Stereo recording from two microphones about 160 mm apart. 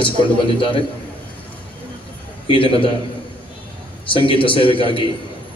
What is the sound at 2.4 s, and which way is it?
Speech, 35° left (ahead or behind).